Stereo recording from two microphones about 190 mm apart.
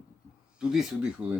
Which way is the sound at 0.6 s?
5° right (ahead or behind).